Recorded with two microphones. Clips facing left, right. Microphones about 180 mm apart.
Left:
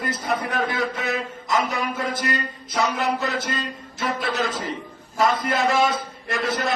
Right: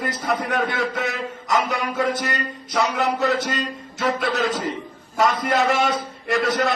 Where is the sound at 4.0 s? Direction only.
65° right (ahead or behind).